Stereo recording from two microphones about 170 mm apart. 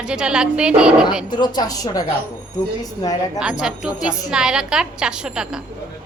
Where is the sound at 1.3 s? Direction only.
25° left (ahead or behind).